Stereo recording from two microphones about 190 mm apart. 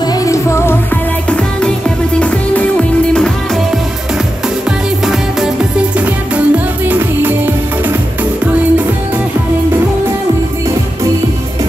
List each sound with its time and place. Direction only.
0.0 s music: 15° left (ahead or behind)
5.0 s music: 5° right (ahead or behind)